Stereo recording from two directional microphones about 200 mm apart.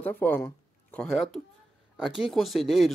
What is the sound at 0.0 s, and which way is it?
Speech, 10° left (ahead or behind).